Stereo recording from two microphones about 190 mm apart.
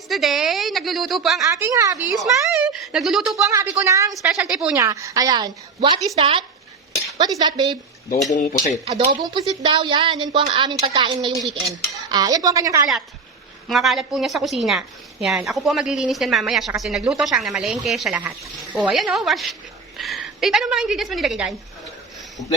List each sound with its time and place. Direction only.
0.1 s a woman's voice: centre (ahead or behind)
1.5 s a woman's voice: 15° right (ahead or behind)
2.2 s speech: centre (ahead or behind)
3.4 s a woman's voice: 15° right (ahead or behind)
4.4 s a woman's voice: 5° right (ahead or behind)
4.8 s speech: 15° right (ahead or behind)
7.4 s speech: 20° right (ahead or behind)
8.3 s speech: 40° left (ahead or behind)
8.8 s speech: 25° right (ahead or behind)
13.7 s a woman's voice: centre (ahead or behind)